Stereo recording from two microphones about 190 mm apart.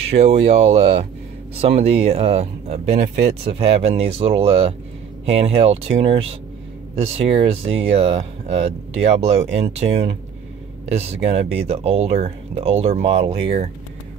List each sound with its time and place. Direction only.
0.1 s speech: 35° right (ahead or behind)